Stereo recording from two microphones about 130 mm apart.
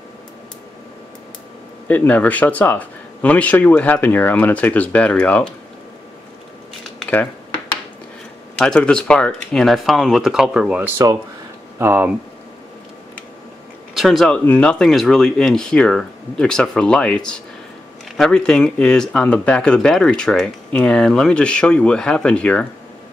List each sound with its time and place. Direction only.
1.9 s speech: 10° left (ahead or behind)
8.5 s speech: 5° left (ahead or behind); by 12.1 s 15° right (ahead or behind)
13.9 s speech: centre (ahead or behind)